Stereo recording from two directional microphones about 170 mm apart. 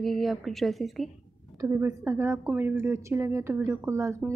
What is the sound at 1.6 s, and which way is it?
A woman's voice, 15° right (ahead or behind).